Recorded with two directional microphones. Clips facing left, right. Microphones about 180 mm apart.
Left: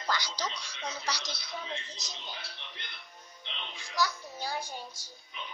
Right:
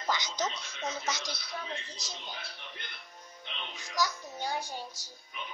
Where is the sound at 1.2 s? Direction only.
10° right (ahead or behind).